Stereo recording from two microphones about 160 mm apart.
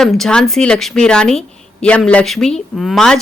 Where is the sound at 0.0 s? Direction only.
Centre (ahead or behind).